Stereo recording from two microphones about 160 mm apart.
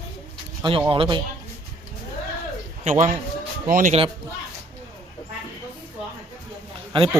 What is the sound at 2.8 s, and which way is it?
A man's voice, 50° right (ahead or behind).